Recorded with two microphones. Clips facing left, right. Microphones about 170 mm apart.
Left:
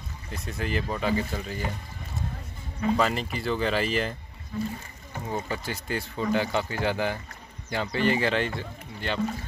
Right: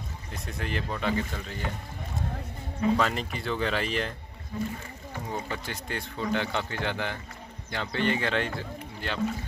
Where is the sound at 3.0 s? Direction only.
5° left (ahead or behind).